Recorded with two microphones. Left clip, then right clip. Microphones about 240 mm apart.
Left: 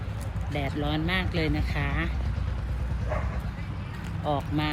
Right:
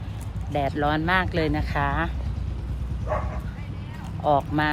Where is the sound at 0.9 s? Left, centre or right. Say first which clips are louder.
Right 6 dB; right.